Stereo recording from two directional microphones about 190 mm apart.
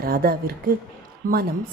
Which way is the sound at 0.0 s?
50° right (ahead or behind).